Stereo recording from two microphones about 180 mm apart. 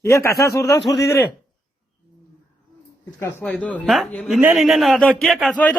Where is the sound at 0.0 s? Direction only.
15° left (ahead or behind).